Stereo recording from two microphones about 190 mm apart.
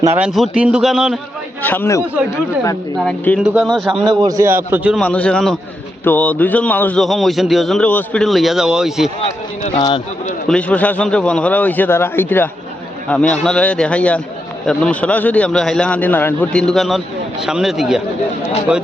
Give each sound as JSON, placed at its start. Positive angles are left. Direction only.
{"t": 0.0, "sound": "a man's voice", "side_deg": -15}
{"t": 0.3, "sound": "a man's voice", "side_deg": 0}
{"t": 1.6, "sound": "a man's voice", "side_deg": 10}
{"t": 4.2, "sound": "a man's voice", "side_deg": -20}
{"t": 4.9, "sound": "a man's voice", "side_deg": 5}
{"t": 9.7, "sound": "speech", "side_deg": 20}
{"t": 10.5, "sound": "a man's voice", "side_deg": 5}